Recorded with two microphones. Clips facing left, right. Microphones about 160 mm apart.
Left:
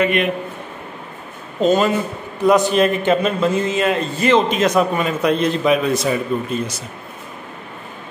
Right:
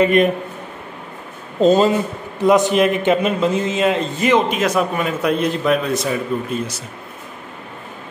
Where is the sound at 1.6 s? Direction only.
30° right (ahead or behind).